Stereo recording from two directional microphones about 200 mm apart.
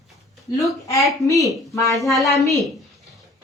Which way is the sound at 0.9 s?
15° left (ahead or behind).